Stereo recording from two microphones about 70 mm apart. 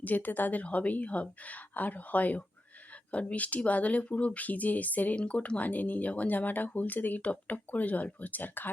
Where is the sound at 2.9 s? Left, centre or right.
Centre.